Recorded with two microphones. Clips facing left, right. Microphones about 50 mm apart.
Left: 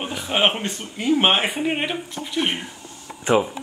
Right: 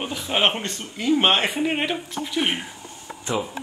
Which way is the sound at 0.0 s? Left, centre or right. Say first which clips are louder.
Left 1 dB; centre.